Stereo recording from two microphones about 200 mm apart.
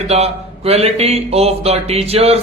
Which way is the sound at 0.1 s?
30° right (ahead or behind).